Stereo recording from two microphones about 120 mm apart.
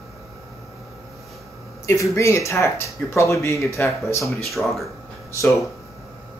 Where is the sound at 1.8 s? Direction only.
25° left (ahead or behind).